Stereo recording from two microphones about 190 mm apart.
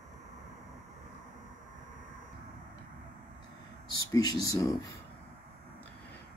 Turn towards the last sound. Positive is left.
turn(degrees=20)  # may be behind; listen again after turning